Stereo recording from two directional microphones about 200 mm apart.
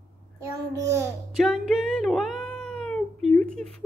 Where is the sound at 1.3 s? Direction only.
Centre (ahead or behind).